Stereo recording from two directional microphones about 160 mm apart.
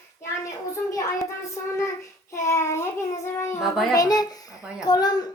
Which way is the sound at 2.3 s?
15° left (ahead or behind).